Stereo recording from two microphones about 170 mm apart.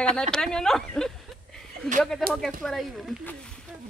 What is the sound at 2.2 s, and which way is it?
Speech, centre (ahead or behind).